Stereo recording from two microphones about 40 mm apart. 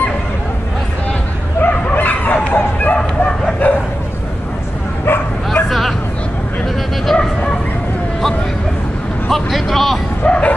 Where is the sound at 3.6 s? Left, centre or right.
Left.